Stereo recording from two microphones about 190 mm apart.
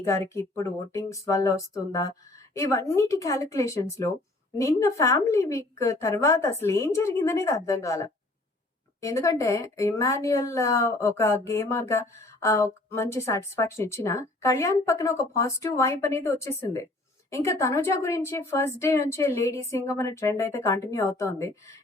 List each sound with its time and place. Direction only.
0.3 s speech: 15° left (ahead or behind)